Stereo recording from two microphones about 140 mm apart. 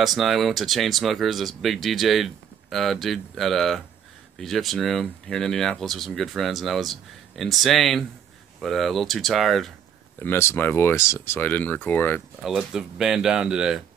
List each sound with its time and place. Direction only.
0.0 s speech: centre (ahead or behind)
10.1 s speech: 15° left (ahead or behind)
12.4 s speech: 5° right (ahead or behind)